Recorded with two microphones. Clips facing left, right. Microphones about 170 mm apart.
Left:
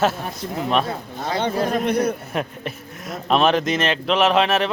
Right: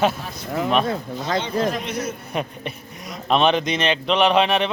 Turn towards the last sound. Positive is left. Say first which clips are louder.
# even
turn(degrees=0)  # may be behind; listen again after turning